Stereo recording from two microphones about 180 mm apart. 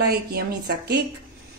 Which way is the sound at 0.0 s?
60° right (ahead or behind).